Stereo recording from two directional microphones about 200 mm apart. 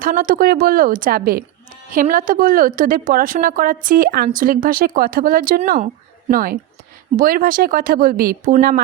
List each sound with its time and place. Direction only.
0.0 s a woman's voice: 45° right (ahead or behind)